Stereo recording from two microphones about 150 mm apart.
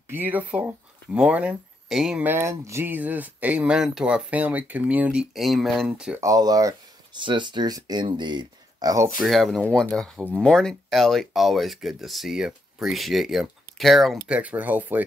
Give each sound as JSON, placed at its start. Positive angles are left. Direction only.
{"t": 0.1, "sound": "speech", "side_deg": -10}
{"t": 2.2, "sound": "speech", "side_deg": -15}
{"t": 6.2, "sound": "speech", "side_deg": -25}
{"t": 9.2, "sound": "speech", "side_deg": 0}
{"t": 10.1, "sound": "speech", "side_deg": -10}
{"t": 10.4, "sound": "speech", "side_deg": 5}